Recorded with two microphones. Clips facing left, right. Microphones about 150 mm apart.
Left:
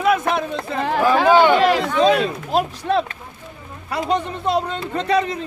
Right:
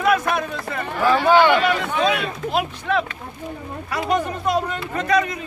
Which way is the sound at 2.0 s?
35° left (ahead or behind).